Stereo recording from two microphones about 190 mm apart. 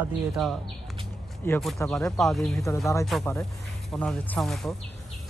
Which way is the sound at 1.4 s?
10° left (ahead or behind).